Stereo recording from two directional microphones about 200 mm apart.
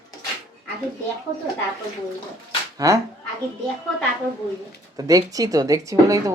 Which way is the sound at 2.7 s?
15° right (ahead or behind).